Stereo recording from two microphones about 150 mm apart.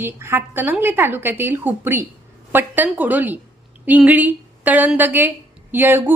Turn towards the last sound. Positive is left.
turn(degrees=-15)  # may be behind; listen again after turning